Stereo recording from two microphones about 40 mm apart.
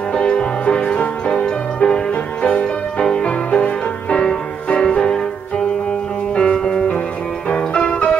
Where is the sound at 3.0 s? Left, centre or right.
Left.